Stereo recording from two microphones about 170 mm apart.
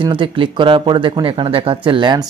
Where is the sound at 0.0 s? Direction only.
30° right (ahead or behind).